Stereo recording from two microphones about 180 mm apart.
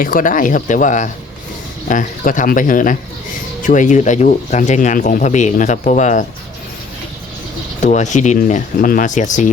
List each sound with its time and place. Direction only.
0.0 s speech: 50° left (ahead or behind)
7.8 s speech: 40° left (ahead or behind)